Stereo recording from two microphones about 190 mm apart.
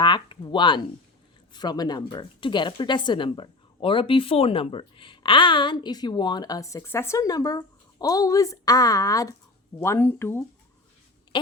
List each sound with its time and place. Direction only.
0.0 s speech: 25° left (ahead or behind)